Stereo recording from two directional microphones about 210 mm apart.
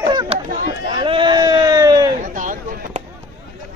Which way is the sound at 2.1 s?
40° right (ahead or behind).